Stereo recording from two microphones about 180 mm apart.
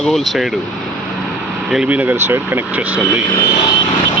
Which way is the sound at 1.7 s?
5° right (ahead or behind).